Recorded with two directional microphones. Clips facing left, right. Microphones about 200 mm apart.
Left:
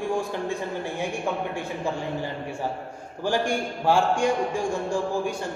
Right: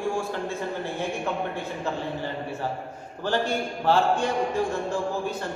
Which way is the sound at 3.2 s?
10° left (ahead or behind).